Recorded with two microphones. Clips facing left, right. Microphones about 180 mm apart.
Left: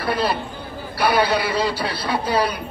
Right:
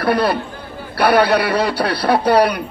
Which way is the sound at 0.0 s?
70° right (ahead or behind).